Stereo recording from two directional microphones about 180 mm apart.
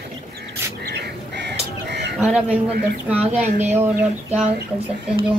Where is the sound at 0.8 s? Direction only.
70° right (ahead or behind).